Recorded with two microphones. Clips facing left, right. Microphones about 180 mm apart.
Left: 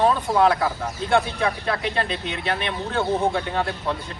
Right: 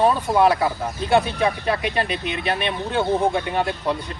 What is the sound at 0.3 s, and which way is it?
Speech, 10° right (ahead or behind).